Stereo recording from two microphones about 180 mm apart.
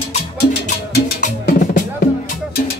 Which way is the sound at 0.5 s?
60° left (ahead or behind).